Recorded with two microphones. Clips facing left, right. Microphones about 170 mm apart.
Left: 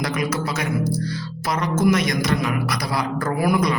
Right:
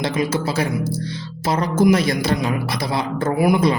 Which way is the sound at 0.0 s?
25° right (ahead or behind).